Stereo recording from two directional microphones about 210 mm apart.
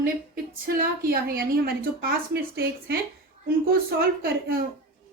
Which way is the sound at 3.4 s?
45° right (ahead or behind).